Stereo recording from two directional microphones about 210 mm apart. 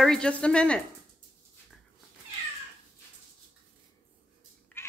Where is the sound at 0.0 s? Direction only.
5° left (ahead or behind).